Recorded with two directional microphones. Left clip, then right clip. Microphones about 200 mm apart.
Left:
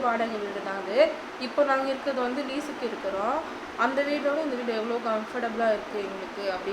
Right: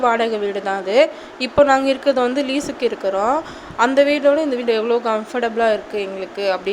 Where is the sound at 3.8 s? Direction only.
45° right (ahead or behind).